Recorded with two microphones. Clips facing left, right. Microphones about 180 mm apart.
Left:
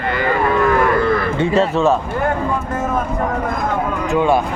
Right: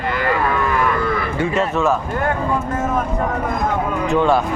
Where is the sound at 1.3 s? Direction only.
30° left (ahead or behind).